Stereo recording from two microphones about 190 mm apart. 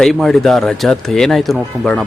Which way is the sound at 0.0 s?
Centre (ahead or behind).